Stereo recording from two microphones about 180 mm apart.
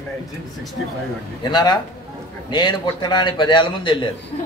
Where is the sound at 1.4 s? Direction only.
25° left (ahead or behind).